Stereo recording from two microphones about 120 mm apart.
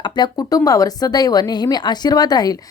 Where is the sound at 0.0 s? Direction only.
35° left (ahead or behind).